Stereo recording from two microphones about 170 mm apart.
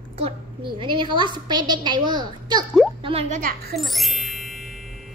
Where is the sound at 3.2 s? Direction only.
45° right (ahead or behind).